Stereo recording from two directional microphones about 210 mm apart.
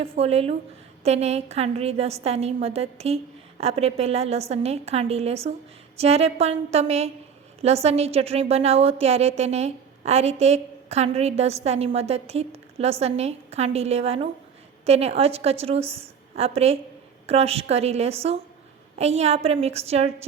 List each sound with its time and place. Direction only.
0.0 s a woman's voice: 30° right (ahead or behind)